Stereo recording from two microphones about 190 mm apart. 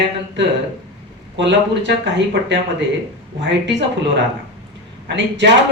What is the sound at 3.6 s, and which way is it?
Speech, 70° right (ahead or behind).